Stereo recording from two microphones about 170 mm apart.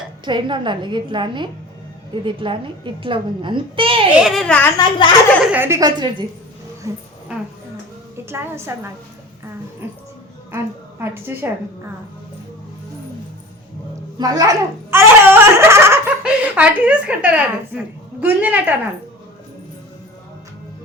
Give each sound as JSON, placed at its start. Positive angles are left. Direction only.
{"t": 0.3, "sound": "a woman's voice", "side_deg": -30}
{"t": 4.2, "sound": "a child's voice", "side_deg": 0}
{"t": 4.8, "sound": "a woman's voice", "side_deg": 25}
{"t": 5.5, "sound": "a woman's voice", "side_deg": -15}
{"t": 8.2, "sound": "a woman's voice", "side_deg": -15}
{"t": 10.5, "sound": "a woman's voice", "side_deg": -15}
{"t": 14.2, "sound": "a sound", "side_deg": -20}
{"t": 16.2, "sound": "a woman's voice", "side_deg": -5}